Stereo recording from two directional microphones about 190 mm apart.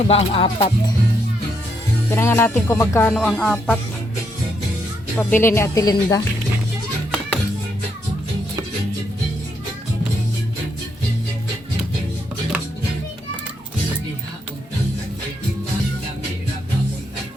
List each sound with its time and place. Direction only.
0.1 s music: 30° left (ahead or behind)
2.0 s music: 15° left (ahead or behind)
3.2 s music: centre (ahead or behind)
5.1 s music: 10° left (ahead or behind)